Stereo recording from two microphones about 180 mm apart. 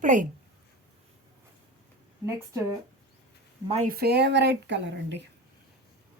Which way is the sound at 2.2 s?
15° right (ahead or behind).